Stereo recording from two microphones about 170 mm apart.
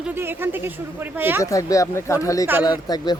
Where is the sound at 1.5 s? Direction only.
20° left (ahead or behind).